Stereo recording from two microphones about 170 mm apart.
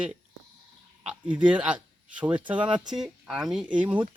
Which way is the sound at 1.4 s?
5° right (ahead or behind).